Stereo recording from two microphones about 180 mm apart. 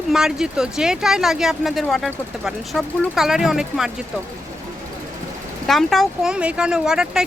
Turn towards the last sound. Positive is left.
turn(degrees=-5)  # may be behind; listen again after turning